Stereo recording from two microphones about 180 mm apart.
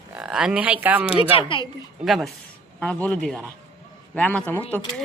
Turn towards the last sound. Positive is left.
turn(degrees=10)  # may be behind; listen again after turning